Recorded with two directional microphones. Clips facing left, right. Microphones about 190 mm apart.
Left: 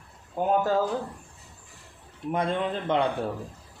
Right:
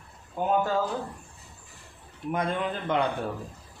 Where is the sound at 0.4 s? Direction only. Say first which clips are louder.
Left 2 dB; 40° left (ahead or behind).